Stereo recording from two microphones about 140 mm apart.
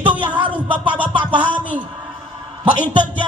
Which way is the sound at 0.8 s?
10° right (ahead or behind).